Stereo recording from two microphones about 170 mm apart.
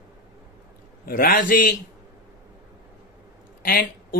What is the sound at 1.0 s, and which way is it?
Speech, 60° left (ahead or behind).